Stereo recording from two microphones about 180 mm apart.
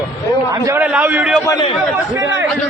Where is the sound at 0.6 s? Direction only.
10° right (ahead or behind).